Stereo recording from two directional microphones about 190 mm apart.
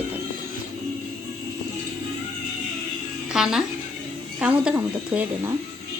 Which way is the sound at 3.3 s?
5° right (ahead or behind).